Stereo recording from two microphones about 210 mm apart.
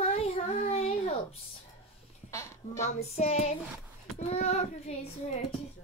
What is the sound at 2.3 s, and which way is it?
Speech, 15° left (ahead or behind).